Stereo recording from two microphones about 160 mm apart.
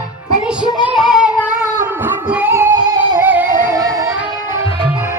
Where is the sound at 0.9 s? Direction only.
Centre (ahead or behind).